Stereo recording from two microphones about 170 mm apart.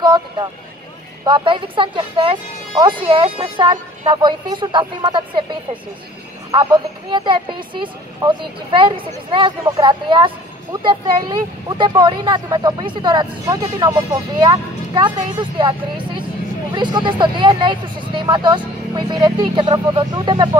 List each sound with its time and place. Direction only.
0.0 s speech: 25° right (ahead or behind)
16.7 s speech: 25° right (ahead or behind)